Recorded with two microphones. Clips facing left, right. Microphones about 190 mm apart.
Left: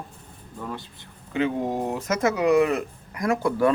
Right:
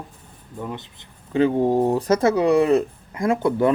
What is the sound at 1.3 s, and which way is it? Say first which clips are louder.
Speech: right 7 dB; 35° right (ahead or behind).